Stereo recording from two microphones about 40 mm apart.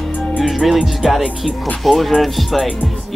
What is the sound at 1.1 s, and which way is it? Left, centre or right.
Speech, centre.